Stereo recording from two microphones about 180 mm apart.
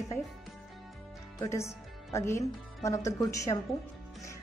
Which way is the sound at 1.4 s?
15° left (ahead or behind).